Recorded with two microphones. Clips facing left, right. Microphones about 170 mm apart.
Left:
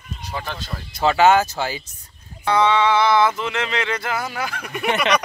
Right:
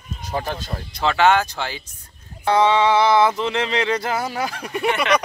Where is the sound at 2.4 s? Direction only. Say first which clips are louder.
Right 1 dB; 30° right (ahead or behind).